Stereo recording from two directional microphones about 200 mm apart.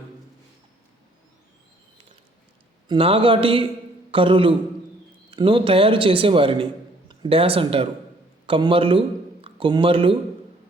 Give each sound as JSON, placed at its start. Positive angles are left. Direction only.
{"t": 2.9, "sound": "a man's voice", "side_deg": -25}